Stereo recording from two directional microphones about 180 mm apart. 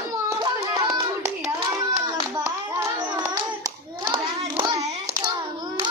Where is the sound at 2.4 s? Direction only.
20° right (ahead or behind).